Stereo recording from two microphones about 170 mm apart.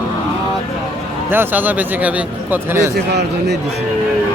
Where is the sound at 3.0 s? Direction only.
80° right.